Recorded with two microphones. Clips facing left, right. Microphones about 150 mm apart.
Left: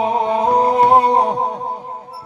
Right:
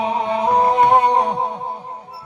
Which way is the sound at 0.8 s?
35° left (ahead or behind).